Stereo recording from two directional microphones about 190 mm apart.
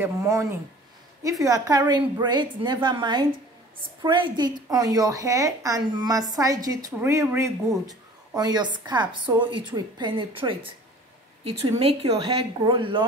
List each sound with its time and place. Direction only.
0.0 s a woman's voice: 15° right (ahead or behind)